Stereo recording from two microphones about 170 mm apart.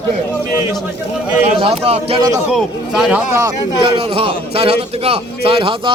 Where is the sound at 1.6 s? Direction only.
35° right (ahead or behind).